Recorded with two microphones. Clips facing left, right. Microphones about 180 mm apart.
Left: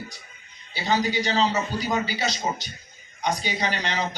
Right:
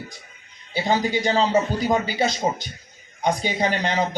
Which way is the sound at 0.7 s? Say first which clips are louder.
Right 3 dB; 50° right (ahead or behind).